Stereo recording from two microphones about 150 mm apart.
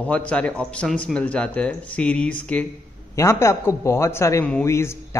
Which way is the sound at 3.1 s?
20° left (ahead or behind).